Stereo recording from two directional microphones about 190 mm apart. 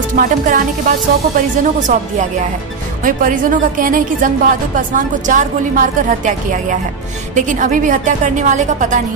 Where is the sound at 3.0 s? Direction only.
45° right (ahead or behind).